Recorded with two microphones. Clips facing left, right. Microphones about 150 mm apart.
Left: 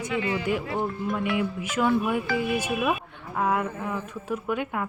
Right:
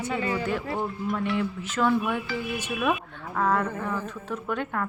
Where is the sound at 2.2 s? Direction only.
55° left (ahead or behind).